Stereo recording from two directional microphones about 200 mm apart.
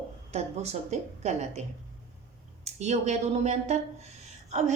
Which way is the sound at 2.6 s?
35° right (ahead or behind).